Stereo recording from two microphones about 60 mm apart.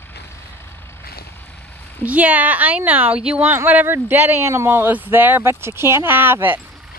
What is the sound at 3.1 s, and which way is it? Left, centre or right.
Speech, centre.